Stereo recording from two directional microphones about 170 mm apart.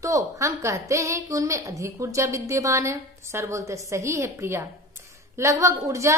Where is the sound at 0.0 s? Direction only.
20° right (ahead or behind).